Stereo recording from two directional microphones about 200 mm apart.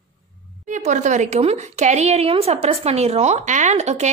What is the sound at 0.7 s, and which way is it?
A woman's voice, 40° right (ahead or behind).